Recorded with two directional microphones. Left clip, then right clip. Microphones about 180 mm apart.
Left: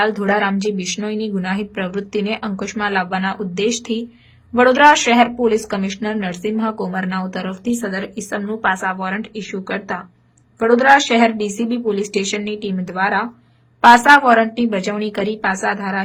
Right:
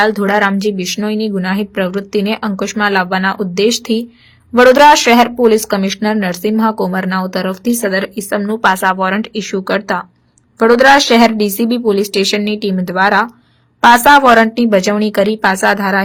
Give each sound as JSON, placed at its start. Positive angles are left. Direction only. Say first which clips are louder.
{"t": 0.0, "sound": "a woman's voice", "louder": "right 5 dB", "side_deg": -25}